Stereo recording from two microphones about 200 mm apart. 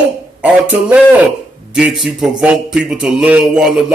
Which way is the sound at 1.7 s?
5° right (ahead or behind).